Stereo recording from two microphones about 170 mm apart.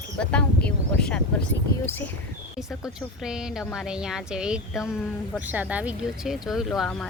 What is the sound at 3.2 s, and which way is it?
Speech, 5° right (ahead or behind).